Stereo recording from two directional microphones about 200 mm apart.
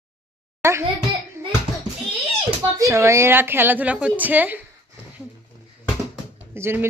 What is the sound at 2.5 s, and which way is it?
Speech, 15° right (ahead or behind).